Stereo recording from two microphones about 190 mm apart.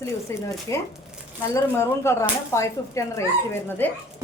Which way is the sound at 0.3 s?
15° left (ahead or behind).